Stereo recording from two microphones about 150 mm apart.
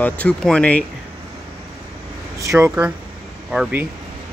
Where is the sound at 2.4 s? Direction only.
20° right (ahead or behind).